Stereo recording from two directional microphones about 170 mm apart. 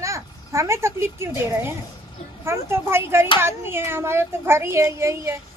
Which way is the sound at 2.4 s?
15° right (ahead or behind).